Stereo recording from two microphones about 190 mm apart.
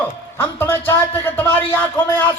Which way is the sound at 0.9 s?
10° left (ahead or behind).